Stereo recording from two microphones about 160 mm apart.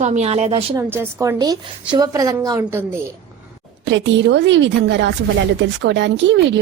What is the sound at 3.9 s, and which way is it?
A woman's voice, 90° right.